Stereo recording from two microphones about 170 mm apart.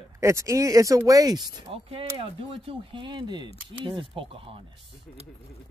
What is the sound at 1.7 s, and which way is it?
Speech, 35° right (ahead or behind).